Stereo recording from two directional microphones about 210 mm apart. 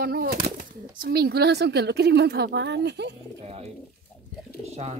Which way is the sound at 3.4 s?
30° right (ahead or behind).